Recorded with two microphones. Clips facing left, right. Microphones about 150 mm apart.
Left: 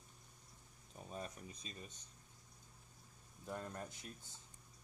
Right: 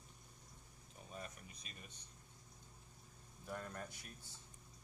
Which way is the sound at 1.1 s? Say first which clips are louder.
Left 4 dB; 30° left (ahead or behind).